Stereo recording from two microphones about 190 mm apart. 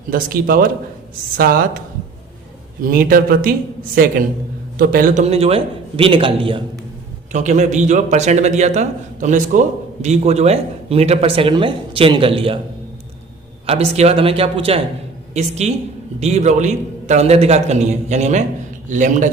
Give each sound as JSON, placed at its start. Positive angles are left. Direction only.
{"t": 0.1, "sound": "a man's voice", "side_deg": -50}
{"t": 2.8, "sound": "a man's voice", "side_deg": -50}
{"t": 7.3, "sound": "speech", "side_deg": -40}
{"t": 13.7, "sound": "a woman's voice", "side_deg": -35}